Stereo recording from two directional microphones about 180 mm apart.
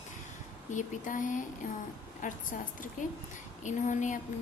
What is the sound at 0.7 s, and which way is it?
Speech, 45° left (ahead or behind).